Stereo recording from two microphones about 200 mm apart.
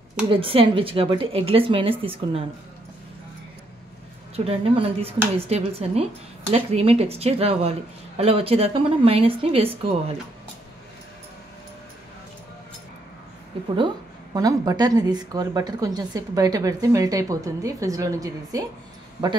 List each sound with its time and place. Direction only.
0.3 s a woman's voice: 25° right (ahead or behind)
4.5 s a woman's voice: 30° right (ahead or behind)
14.3 s a woman's voice: 20° right (ahead or behind)